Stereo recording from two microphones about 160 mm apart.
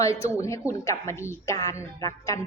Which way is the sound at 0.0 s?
20° left (ahead or behind).